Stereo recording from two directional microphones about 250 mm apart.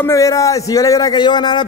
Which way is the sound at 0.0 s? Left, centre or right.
Centre.